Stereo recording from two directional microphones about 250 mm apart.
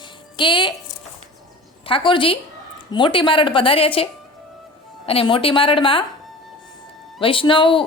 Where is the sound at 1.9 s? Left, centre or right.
Left.